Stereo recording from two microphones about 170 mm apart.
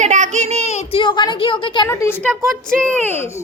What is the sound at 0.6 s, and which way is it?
Speech, 40° left (ahead or behind).